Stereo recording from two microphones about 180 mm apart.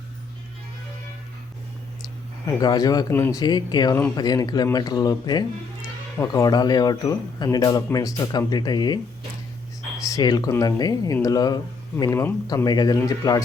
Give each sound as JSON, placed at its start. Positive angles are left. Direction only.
{"t": 2.6, "sound": "speech", "side_deg": 20}
{"t": 10.0, "sound": "speech", "side_deg": 20}